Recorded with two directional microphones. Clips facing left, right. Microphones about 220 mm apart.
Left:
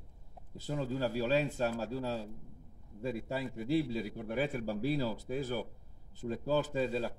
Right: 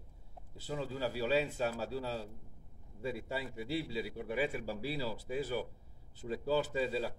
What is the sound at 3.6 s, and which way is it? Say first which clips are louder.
Speech: left 7 dB; 45° left (ahead or behind).